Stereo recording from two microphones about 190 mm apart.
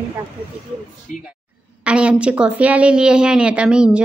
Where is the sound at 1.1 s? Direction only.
45° left (ahead or behind).